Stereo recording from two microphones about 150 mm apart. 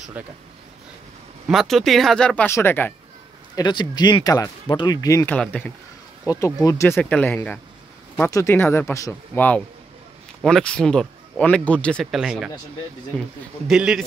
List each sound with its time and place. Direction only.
0.2 s speech: 10° right (ahead or behind)
1.5 s speech: centre (ahead or behind)
3.5 s speech: 25° left (ahead or behind)
5.3 s speech: 10° left (ahead or behind)
6.4 s speech: 20° left (ahead or behind); by 12.4 s 5° right (ahead or behind)
13.7 s speech: 5° right (ahead or behind)